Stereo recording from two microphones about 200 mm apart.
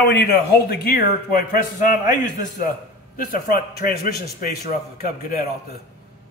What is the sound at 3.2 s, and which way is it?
A man's voice, 45° left (ahead or behind).